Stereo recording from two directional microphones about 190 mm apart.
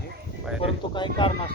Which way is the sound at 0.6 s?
25° left (ahead or behind).